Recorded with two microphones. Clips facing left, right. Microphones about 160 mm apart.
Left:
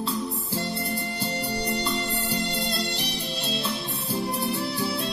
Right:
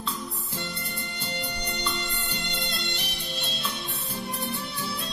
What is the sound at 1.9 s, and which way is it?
Music, 35° left (ahead or behind).